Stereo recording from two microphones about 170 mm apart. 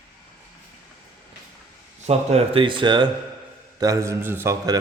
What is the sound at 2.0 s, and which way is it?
A man's voice, 35° right (ahead or behind).